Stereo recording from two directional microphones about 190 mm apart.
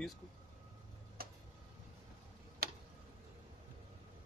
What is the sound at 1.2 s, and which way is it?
Tick-tock, 50° right (ahead or behind).